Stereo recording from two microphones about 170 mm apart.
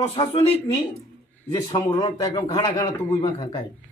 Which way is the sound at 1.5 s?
25° left (ahead or behind).